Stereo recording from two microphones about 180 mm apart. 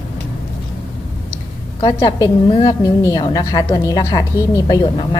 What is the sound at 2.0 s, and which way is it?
A woman's voice, 20° left (ahead or behind).